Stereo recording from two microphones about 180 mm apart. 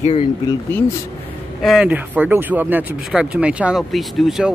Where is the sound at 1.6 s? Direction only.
5° right (ahead or behind).